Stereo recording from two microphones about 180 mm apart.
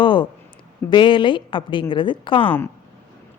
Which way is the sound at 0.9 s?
25° left (ahead or behind).